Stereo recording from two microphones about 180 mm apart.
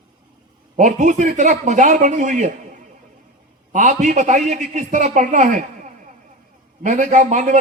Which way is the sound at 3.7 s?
45° right (ahead or behind).